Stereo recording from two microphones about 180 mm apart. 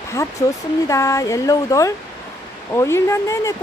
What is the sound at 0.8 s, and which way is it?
Speech, 15° left (ahead or behind).